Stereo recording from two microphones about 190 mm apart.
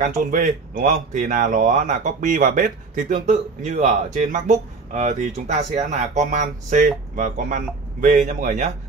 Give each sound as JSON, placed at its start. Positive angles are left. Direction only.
{"t": 0.0, "sound": "speech", "side_deg": -45}